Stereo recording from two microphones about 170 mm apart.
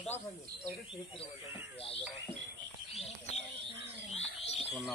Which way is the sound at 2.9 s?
40° left (ahead or behind).